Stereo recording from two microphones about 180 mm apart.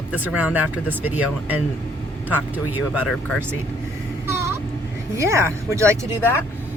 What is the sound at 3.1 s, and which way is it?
Speech, 5° left (ahead or behind).